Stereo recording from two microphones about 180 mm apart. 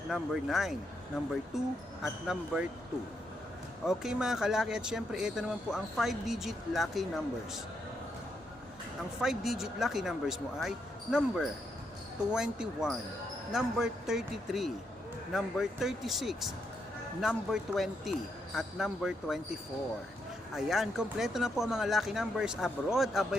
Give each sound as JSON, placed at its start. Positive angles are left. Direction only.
{"t": 0.1, "sound": "speech", "side_deg": 0}
{"t": 3.8, "sound": "speech", "side_deg": -5}
{"t": 9.2, "sound": "speech", "side_deg": 0}
{"t": 20.6, "sound": "speech", "side_deg": -5}